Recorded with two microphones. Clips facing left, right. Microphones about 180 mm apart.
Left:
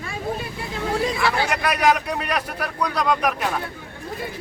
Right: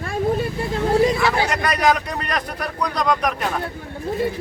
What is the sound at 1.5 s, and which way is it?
A man's voice, 5° left (ahead or behind).